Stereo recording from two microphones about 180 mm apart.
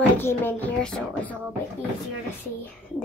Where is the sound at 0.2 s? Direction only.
10° left (ahead or behind).